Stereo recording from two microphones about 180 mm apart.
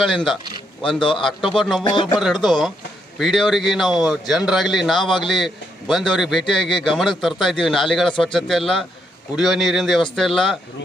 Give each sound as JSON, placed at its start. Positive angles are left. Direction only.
{"t": 0.0, "sound": "a man's voice", "side_deg": 0}
{"t": 0.9, "sound": "speech", "side_deg": 25}
{"t": 1.2, "sound": "a man's voice", "side_deg": 0}
{"t": 1.8, "sound": "speech", "side_deg": 25}
{"t": 2.1, "sound": "a man's voice", "side_deg": 0}